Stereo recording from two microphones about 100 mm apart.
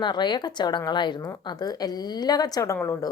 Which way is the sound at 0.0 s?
50° left (ahead or behind).